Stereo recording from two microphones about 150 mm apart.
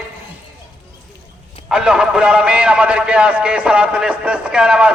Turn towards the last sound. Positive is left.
turn(degrees=-5)  # may be behind; listen again after turning